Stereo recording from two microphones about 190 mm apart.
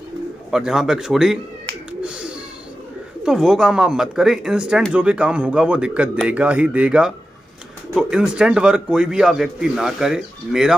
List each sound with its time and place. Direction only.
0.5 s speech: 5° right (ahead or behind)
1.9 s a sound: 5° right (ahead or behind)
3.3 s speech: 5° right (ahead or behind)